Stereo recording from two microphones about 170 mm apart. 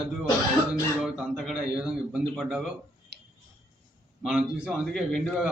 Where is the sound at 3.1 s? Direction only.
75° right (ahead or behind).